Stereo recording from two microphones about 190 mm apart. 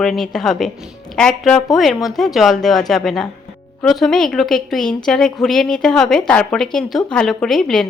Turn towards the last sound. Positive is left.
turn(degrees=5)  # may be behind; listen again after turning